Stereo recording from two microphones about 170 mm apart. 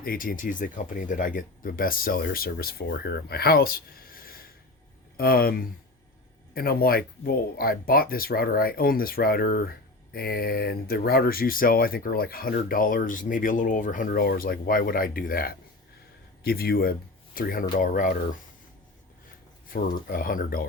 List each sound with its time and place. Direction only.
0.0 s speech: 55° left (ahead or behind)
19.7 s speech: 55° left (ahead or behind)